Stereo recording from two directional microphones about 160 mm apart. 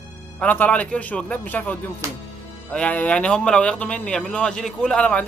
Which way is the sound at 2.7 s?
10° left (ahead or behind).